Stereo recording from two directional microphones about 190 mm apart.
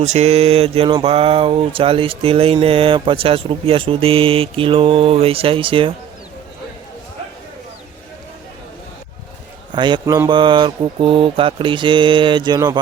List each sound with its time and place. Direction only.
0.0 s mantra: 35° right (ahead or behind)
1.0 s speech: 30° right (ahead or behind)
9.7 s speech: 25° right (ahead or behind)